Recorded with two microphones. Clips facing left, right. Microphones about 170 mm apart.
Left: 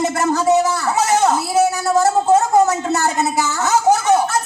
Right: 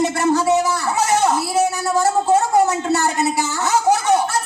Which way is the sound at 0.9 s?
40° left (ahead or behind).